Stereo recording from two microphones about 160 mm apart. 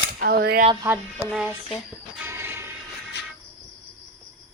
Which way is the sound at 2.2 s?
15° right (ahead or behind).